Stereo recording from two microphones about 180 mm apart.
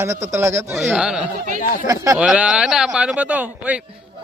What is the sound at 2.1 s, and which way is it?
Speech, 5° right (ahead or behind).